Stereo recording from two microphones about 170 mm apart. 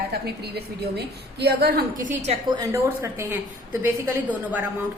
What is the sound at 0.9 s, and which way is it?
A woman's voice, 75° right (ahead or behind).